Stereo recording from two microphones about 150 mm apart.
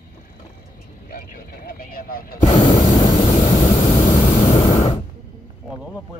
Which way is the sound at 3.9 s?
50° left (ahead or behind).